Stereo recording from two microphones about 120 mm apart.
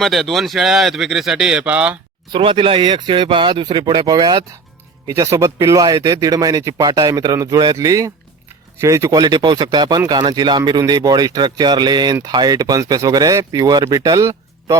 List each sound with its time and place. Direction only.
0.0 s speech: centre (ahead or behind)
2.3 s speech: 45° right (ahead or behind); by 14.8 s 25° right (ahead or behind)